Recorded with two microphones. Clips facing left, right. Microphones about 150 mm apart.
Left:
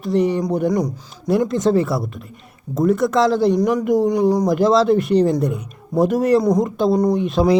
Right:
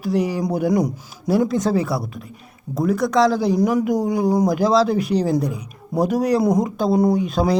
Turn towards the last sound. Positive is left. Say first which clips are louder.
# left 2 dB
turn(degrees=0)  # may be behind; listen again after turning